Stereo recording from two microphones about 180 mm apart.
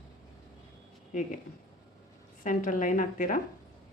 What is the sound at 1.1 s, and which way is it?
Speech, 45° left (ahead or behind).